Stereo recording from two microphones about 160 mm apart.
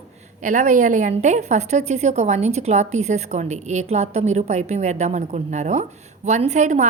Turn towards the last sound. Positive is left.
turn(degrees=-45)  # may be behind; listen again after turning